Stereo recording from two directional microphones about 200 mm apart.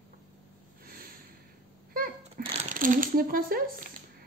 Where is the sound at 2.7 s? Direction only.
40° right (ahead or behind).